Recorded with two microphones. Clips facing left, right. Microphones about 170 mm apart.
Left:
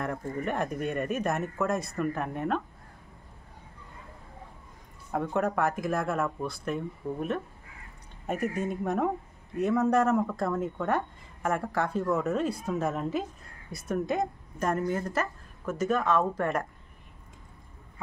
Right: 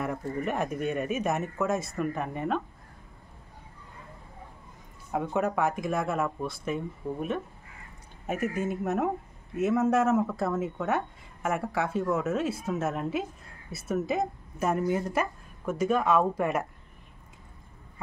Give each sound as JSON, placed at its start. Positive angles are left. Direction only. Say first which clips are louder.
{"t": 0.0, "sound": "speech", "louder": "right 1 dB", "side_deg": -5}
{"t": 5.1, "sound": "speech", "louder": "even", "side_deg": -5}